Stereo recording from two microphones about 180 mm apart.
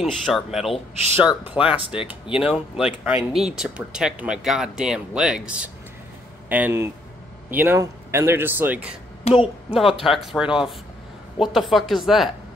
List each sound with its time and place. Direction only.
0.0 s speech: centre (ahead or behind)
9.3 s a woman's voice: 35° left (ahead or behind)
9.9 s speech: centre (ahead or behind)